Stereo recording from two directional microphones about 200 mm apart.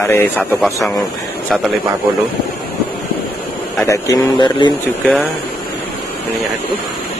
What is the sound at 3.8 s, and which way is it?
Speech, 15° left (ahead or behind).